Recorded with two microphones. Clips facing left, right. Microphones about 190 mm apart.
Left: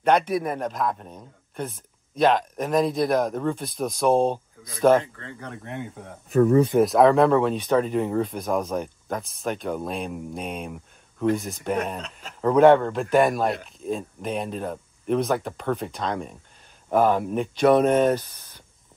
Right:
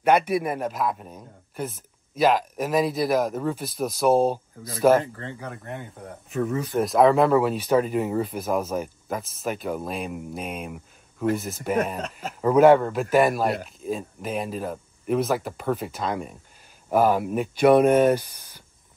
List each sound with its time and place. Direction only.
0.0 s speech: 5° right (ahead or behind)
5.0 s speech: 30° right (ahead or behind)
5.4 s speech: centre (ahead or behind)
12.0 s a man's voice: 45° right (ahead or behind)
12.4 s speech: 5° right (ahead or behind)